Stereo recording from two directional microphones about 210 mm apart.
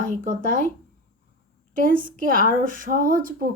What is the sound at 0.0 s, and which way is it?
Speech, 40° right (ahead or behind).